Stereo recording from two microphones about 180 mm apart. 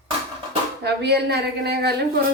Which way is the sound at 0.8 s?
65° right (ahead or behind).